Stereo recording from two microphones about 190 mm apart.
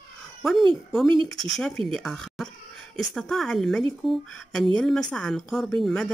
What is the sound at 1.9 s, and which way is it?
Speech, centre (ahead or behind).